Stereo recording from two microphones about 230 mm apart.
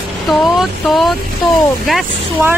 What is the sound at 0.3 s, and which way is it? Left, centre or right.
Speech, centre.